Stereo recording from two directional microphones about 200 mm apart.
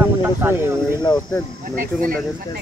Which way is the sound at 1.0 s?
20° left (ahead or behind).